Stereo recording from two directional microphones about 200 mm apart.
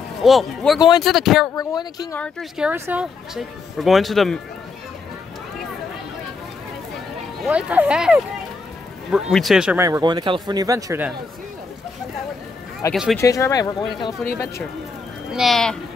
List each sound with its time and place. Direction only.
0.2 s speech: centre (ahead or behind)
0.7 s speech: 20° left (ahead or behind)
1.0 s speech: centre (ahead or behind)
1.5 s speech: 20° left (ahead or behind)
2.1 s speech: 5° left (ahead or behind)
7.4 s speech: 5° right (ahead or behind)
9.8 s speech: 15° right (ahead or behind)
12.9 s speech: centre (ahead or behind)
13.2 s speech: 15° left (ahead or behind)
15.3 s speech: centre (ahead or behind)